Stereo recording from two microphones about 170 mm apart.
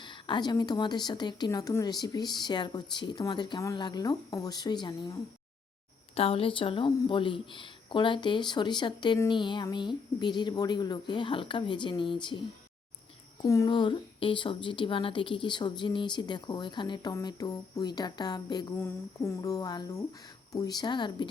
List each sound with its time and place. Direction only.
0.0 s speech: 25° left (ahead or behind)